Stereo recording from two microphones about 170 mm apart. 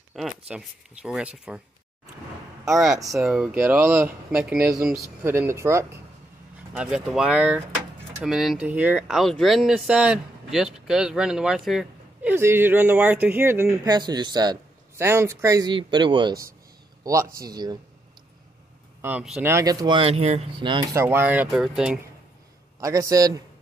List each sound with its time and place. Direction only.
0.2 s speech: centre (ahead or behind)
2.7 s speech: 5° right (ahead or behind)
3.5 s speech: 15° right (ahead or behind)
18.9 s speech: 10° right (ahead or behind)
19.5 s speech: 20° right (ahead or behind)
21.0 s speech: 10° right (ahead or behind)
22.8 s speech: 20° right (ahead or behind)